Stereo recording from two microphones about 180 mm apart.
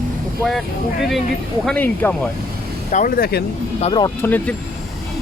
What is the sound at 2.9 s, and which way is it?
Speech, 50° left (ahead or behind).